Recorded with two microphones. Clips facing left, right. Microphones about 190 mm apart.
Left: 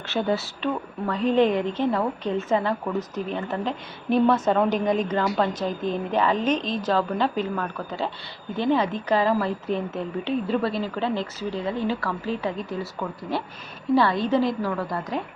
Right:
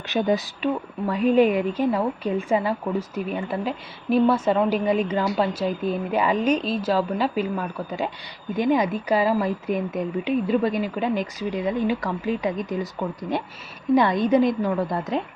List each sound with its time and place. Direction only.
0.1 s a woman's voice: 15° right (ahead or behind)